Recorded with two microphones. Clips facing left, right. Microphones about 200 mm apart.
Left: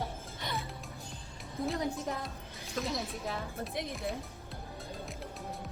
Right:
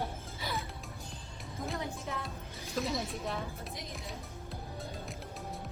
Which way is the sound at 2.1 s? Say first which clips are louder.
Left 3 dB; 40° left (ahead or behind).